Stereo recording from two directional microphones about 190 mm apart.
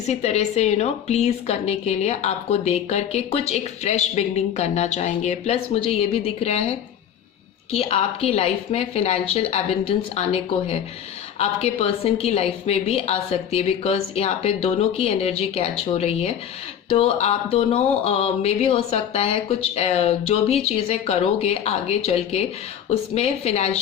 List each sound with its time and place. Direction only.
0.1 s a woman's voice: 35° left (ahead or behind)